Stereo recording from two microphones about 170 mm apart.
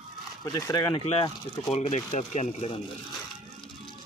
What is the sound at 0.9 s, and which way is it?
Speech, 35° left (ahead or behind).